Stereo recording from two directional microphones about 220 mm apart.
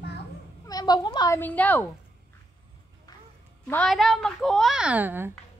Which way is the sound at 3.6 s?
5° left (ahead or behind).